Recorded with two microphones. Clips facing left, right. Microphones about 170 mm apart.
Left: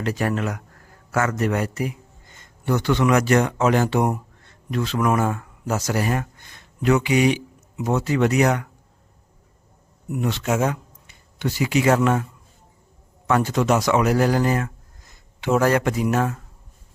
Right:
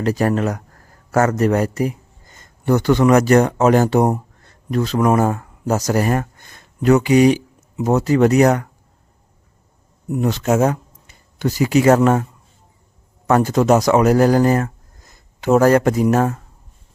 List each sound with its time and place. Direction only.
0.0 s a man's voice: 40° right (ahead or behind)
10.1 s speech: 40° right (ahead or behind)
13.2 s a man's voice: 40° right (ahead or behind)